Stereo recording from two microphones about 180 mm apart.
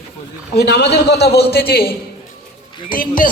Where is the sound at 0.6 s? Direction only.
70° left (ahead or behind); by 3.3 s 50° left (ahead or behind).